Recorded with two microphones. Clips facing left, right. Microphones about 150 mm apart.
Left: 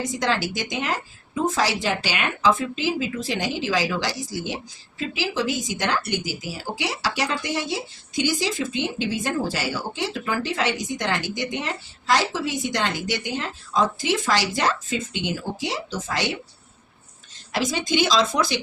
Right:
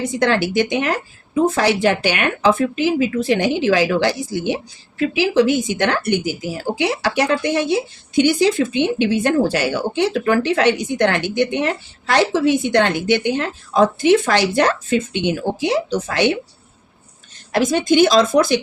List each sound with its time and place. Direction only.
0.0 s speech: 60° right (ahead or behind)
17.5 s a woman's voice: 55° right (ahead or behind)